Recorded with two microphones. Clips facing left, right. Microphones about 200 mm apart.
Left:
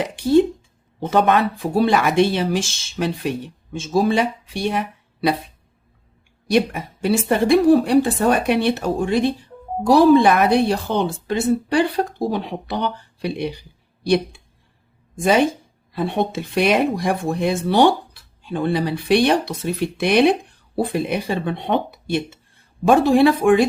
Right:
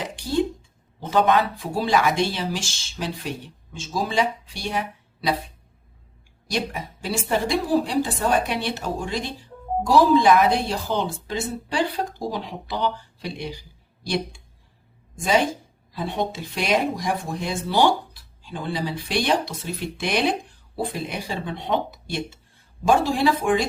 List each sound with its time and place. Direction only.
0.0 s speech: 55° left (ahead or behind)
6.5 s speech: 60° left (ahead or behind)